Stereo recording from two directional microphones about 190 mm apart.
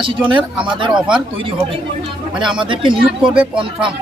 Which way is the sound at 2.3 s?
5° right (ahead or behind).